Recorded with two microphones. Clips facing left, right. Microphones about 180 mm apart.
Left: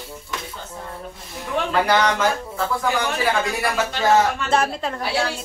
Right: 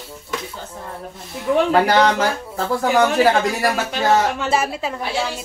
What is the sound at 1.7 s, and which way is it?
Speech, 40° right (ahead or behind).